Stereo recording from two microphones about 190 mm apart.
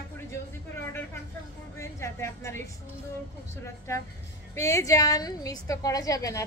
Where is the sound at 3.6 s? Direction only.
15° left (ahead or behind).